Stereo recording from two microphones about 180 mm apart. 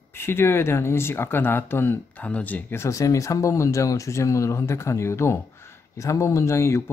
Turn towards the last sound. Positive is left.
turn(degrees=15)  # may be behind; listen again after turning